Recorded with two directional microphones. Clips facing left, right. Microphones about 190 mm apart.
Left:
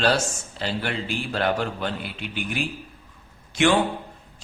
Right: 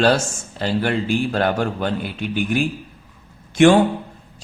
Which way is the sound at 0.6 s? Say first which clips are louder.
Right 7 dB; 45° right (ahead or behind).